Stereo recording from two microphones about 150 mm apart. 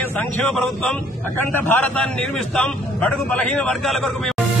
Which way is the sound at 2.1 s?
Centre (ahead or behind).